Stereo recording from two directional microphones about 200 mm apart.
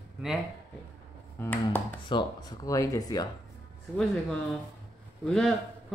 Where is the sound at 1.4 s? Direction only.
10° left (ahead or behind).